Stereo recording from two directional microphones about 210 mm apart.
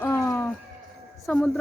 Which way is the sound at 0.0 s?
15° left (ahead or behind).